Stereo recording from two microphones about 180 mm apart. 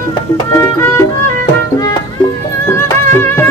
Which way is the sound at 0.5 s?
15° left (ahead or behind).